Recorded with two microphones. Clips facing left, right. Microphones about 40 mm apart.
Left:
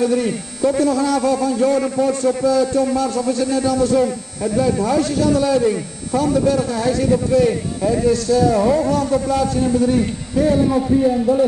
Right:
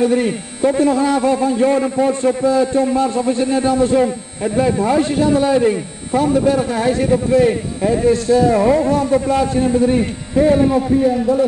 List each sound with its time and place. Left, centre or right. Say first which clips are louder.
0.0 s a man's voice: right 2 dB; right
10.7 s a man's voice: right 1 dB; centre